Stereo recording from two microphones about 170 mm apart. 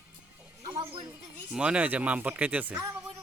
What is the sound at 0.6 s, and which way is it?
Speech, 30° right (ahead or behind).